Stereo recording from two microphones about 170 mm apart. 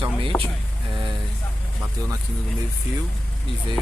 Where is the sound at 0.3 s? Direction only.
10° left (ahead or behind).